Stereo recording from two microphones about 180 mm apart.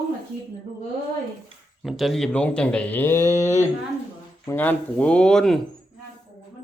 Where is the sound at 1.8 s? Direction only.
Centre (ahead or behind).